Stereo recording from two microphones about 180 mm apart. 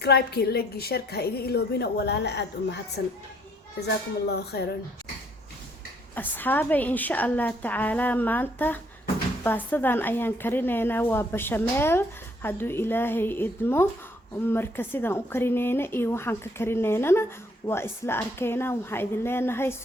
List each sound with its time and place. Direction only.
0.0 s a woman's voice: 65° left (ahead or behind)
6.1 s a woman's voice: 10° left (ahead or behind)